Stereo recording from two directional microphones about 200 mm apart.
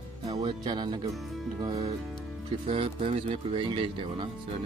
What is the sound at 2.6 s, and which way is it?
Speech, 30° right (ahead or behind).